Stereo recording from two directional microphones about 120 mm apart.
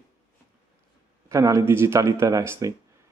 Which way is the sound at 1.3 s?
25° right (ahead or behind).